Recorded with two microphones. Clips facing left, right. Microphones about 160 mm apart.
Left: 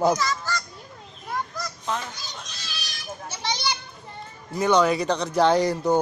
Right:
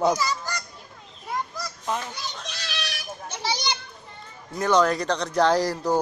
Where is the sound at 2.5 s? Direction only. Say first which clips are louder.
Right 6 dB; 75° right (ahead or behind).